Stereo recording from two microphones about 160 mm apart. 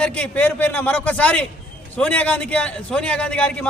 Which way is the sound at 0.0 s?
5° left (ahead or behind).